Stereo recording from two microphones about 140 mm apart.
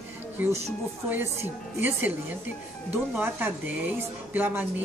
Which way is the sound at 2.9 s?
15° right (ahead or behind).